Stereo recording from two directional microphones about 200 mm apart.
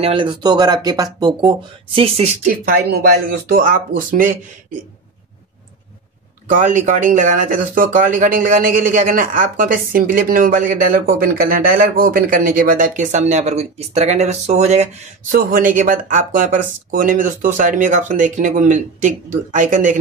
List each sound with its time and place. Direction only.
0.0 s speech: 25° right (ahead or behind)
3.4 s speech: 45° right (ahead or behind)
6.5 s speech: 40° right (ahead or behind)